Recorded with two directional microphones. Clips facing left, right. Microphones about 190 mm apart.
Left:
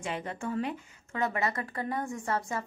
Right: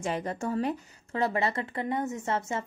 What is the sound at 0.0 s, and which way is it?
Speech, 40° right (ahead or behind).